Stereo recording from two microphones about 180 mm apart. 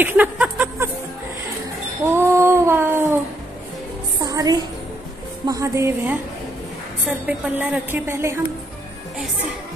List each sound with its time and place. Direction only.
0.0 s a sound: 10° right (ahead or behind)
2.0 s female singing: 15° right (ahead or behind)
4.2 s music: 20° right (ahead or behind)
5.5 s a woman's voice: 15° right (ahead or behind)